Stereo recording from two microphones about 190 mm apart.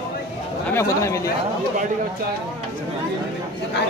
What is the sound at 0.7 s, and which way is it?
Speech, 15° left (ahead or behind).